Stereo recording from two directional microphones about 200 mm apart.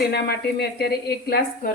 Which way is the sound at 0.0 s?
55° left (ahead or behind).